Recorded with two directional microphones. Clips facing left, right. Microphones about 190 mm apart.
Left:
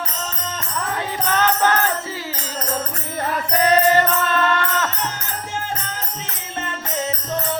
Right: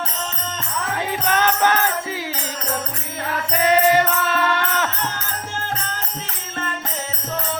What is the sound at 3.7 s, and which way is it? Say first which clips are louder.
Mantra: right 1 dB; 15° right (ahead or behind).